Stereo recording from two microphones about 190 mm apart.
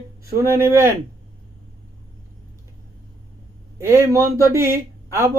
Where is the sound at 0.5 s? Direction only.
15° right (ahead or behind).